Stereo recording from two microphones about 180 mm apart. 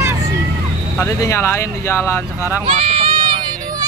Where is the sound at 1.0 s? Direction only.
15° left (ahead or behind).